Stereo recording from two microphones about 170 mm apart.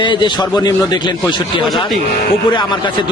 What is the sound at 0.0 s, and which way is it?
A man's voice, 25° left (ahead or behind).